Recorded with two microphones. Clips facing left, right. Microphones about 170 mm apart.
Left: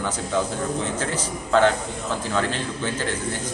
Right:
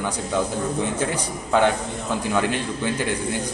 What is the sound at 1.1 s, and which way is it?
A man's voice, 15° right (ahead or behind).